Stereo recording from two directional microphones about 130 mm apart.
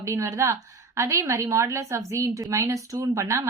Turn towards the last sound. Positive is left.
turn(degrees=-25)  # may be behind; listen again after turning